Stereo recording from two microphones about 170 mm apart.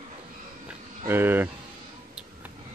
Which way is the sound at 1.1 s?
10° right (ahead or behind).